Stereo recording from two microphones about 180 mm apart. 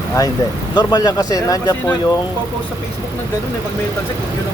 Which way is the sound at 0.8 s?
20° left (ahead or behind).